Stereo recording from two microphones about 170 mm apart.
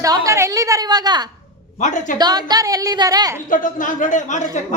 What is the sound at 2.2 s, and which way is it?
A woman's voice, 25° right (ahead or behind).